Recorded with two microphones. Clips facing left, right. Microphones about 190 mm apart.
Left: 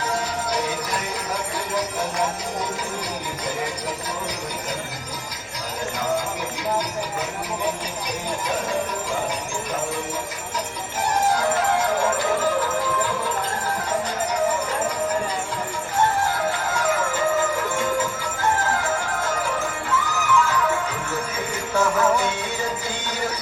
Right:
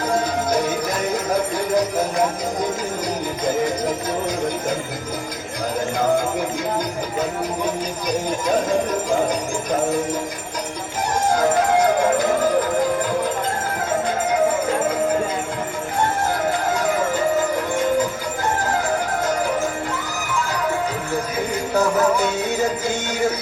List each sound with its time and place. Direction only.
0.1 s music: 45° right (ahead or behind)
1.3 s jingle bell: 45° right (ahead or behind)
3.4 s jingle bell: 45° right (ahead or behind)
11.3 s music: 45° right (ahead or behind)
16.5 s music: 40° right (ahead or behind)
18.6 s music: 40° right (ahead or behind)
21.8 s music: 40° right (ahead or behind)